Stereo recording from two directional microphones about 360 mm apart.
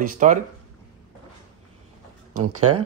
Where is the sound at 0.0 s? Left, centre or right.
Right.